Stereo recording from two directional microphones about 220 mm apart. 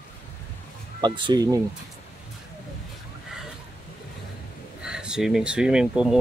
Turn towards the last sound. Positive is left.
turn(degrees=-5)  # may be behind; listen again after turning